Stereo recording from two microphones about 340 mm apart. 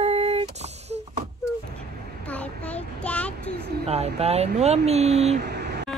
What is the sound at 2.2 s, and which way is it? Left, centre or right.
Child singing, centre.